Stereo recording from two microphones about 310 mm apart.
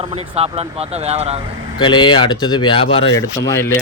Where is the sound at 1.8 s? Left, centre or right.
Centre.